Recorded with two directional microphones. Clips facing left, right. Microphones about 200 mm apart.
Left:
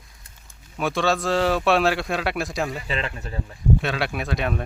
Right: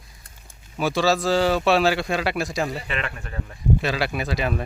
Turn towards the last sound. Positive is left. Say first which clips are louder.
# right 1 dB
turn(degrees=0)  # may be behind; listen again after turning